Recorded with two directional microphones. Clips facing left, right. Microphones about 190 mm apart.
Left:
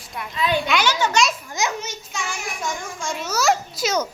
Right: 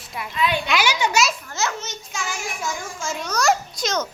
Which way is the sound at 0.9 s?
10° right (ahead or behind).